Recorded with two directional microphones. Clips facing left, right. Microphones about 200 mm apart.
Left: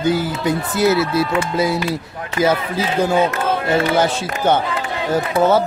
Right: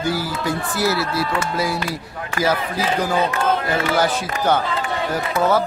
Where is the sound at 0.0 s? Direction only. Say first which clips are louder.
Left 5 dB; 20° left (ahead or behind).